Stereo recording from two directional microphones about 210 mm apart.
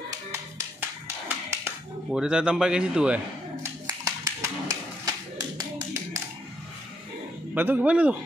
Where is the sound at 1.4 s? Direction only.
5° right (ahead or behind).